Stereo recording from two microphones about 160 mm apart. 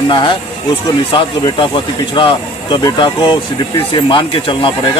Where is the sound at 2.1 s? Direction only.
30° left (ahead or behind).